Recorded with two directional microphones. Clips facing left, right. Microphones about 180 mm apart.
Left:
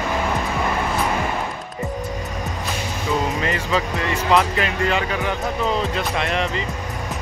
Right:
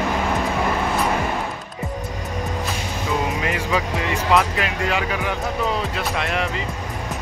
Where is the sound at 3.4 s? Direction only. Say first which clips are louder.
Left 1 dB; 10° right (ahead or behind).